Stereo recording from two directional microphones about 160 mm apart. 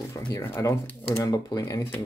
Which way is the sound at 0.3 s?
15° left (ahead or behind).